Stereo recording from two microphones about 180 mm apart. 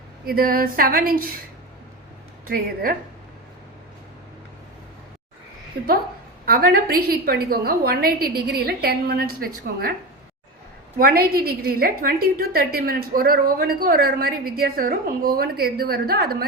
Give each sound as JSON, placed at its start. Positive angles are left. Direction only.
{"t": 0.3, "sound": "a sound", "side_deg": -55}
{"t": 5.7, "sound": "a woman's voice", "side_deg": -60}
{"t": 10.9, "sound": "a woman's voice", "side_deg": -55}